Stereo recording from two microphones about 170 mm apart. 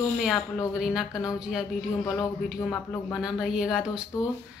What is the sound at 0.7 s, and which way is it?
Speech, 5° right (ahead or behind).